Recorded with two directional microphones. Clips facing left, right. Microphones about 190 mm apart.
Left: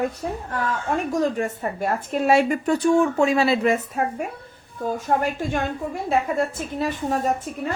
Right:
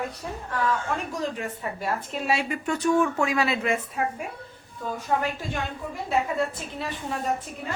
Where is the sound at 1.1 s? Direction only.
45° left (ahead or behind).